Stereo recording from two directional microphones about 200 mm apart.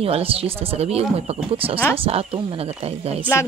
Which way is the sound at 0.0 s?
30° right (ahead or behind).